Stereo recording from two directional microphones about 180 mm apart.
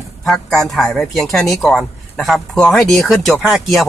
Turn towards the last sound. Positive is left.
turn(degrees=0)  # may be behind; listen again after turning